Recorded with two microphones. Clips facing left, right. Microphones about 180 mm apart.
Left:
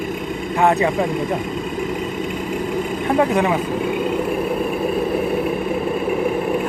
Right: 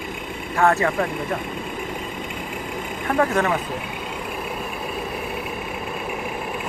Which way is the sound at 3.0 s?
20° left (ahead or behind).